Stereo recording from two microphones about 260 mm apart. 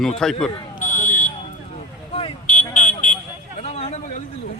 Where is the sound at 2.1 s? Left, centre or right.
Left.